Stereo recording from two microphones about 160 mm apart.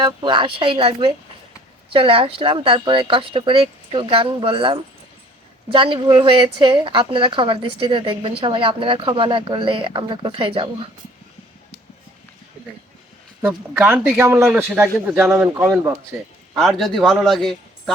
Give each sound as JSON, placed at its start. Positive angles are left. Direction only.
{"t": 0.0, "sound": "speech", "side_deg": -30}
{"t": 13.4, "sound": "a man's voice", "side_deg": -10}
{"t": 16.6, "sound": "a man's voice", "side_deg": 0}